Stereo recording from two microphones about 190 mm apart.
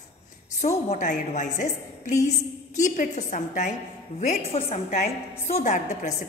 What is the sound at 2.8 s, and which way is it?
A woman's voice, 40° left (ahead or behind).